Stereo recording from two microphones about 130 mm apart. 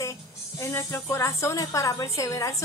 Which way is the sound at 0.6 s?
20° left (ahead or behind).